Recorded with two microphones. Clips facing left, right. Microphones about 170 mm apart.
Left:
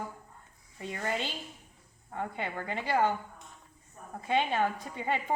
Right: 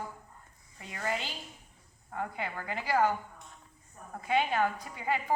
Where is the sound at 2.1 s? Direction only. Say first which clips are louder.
Left 1 dB; 25° left (ahead or behind).